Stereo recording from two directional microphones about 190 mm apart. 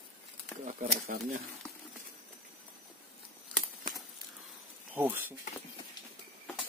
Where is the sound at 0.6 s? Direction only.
40° right (ahead or behind).